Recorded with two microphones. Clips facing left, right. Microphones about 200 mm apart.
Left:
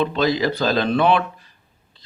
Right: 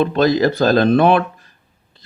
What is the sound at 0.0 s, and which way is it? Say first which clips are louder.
Speech: right 5 dB; 50° right (ahead or behind).